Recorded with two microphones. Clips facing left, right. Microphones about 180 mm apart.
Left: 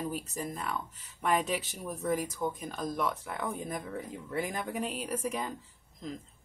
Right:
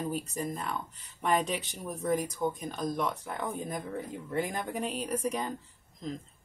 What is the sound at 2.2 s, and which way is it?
Speech, 15° right (ahead or behind).